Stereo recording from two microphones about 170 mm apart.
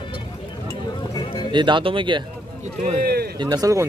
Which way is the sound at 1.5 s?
30° right (ahead or behind).